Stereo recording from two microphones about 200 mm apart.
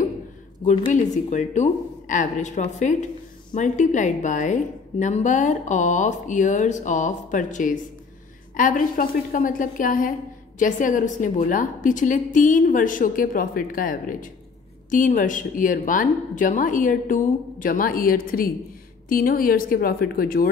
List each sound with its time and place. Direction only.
0.7 s a woman's voice: 40° left (ahead or behind)